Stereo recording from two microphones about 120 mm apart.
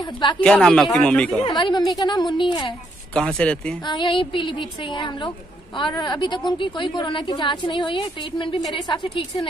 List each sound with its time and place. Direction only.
0.0 s a woman's voice: 40° left (ahead or behind)
0.4 s speech: 5° left (ahead or behind)
1.4 s a woman's voice: 40° left (ahead or behind)
3.2 s speech: 5° left (ahead or behind)
3.8 s a woman's voice: 40° left (ahead or behind)